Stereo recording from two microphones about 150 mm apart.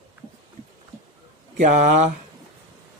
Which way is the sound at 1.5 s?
55° right (ahead or behind).